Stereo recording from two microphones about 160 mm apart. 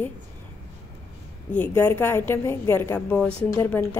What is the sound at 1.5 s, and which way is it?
A woman's voice, 10° left (ahead or behind).